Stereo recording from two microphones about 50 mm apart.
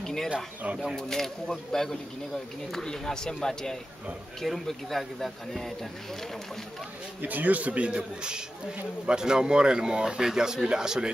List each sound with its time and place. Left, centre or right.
0.0 s speech: centre
7.2 s a man's voice: right; by 11.1 s centre